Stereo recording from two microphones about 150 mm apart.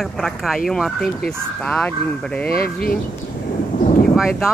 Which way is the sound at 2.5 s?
80° left.